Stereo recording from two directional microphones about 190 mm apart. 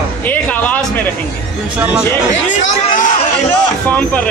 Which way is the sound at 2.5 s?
40° left (ahead or behind).